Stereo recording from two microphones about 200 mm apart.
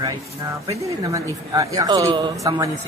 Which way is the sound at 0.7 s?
15° right (ahead or behind).